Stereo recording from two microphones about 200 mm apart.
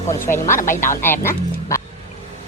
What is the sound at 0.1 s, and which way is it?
Speech, 15° left (ahead or behind).